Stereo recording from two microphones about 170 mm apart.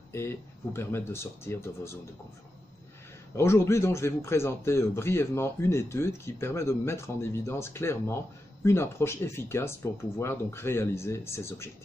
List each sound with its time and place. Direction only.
0.7 s speech: 15° left (ahead or behind)
3.3 s speech: 15° left (ahead or behind)